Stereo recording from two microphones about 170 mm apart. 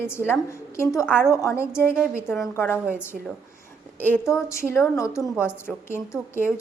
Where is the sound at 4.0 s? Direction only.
10° left (ahead or behind).